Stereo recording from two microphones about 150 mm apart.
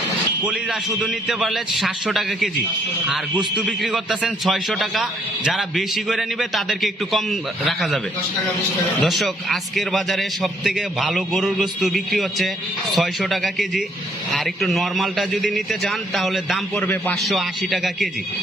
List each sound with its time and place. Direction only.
0.5 s a man's voice: 5° right (ahead or behind)
9.0 s a man's voice: centre (ahead or behind)
16.7 s a man's voice: 10° left (ahead or behind)
17.2 s a man's voice: centre (ahead or behind)